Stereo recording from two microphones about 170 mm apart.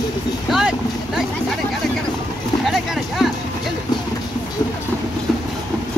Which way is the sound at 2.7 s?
Centre (ahead or behind).